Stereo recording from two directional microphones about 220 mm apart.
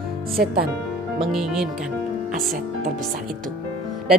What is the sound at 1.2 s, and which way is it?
Speech, centre (ahead or behind).